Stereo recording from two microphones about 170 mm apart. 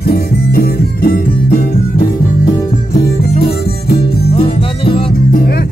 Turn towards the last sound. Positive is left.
turn(degrees=35)  # may be behind; listen again after turning